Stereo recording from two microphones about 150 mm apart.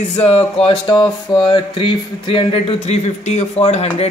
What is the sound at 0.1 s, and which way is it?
Speech, 40° left (ahead or behind).